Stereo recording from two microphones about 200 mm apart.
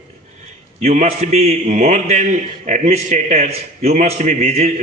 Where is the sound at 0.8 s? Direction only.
35° right (ahead or behind).